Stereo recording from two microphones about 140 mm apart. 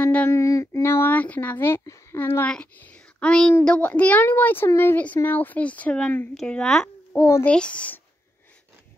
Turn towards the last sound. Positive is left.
turn(degrees=10)  # may be behind; listen again after turning